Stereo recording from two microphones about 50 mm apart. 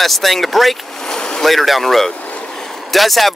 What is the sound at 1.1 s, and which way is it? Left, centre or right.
Speech, centre.